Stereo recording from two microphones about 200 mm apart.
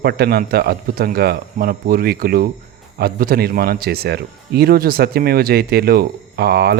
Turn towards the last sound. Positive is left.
turn(degrees=-50)  # may be behind; listen again after turning